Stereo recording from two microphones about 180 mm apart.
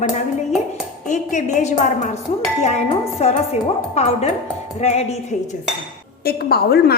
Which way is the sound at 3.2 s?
35° left (ahead or behind).